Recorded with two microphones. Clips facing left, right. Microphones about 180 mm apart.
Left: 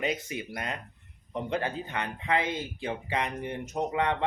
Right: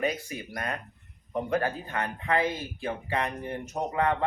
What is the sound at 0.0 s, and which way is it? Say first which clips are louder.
Speech: right 1 dB; 20° left (ahead or behind).